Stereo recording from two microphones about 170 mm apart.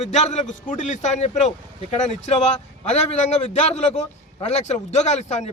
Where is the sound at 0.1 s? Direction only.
45° left (ahead or behind).